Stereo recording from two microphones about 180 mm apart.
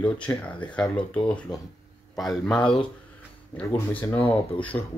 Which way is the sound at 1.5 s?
25° left (ahead or behind).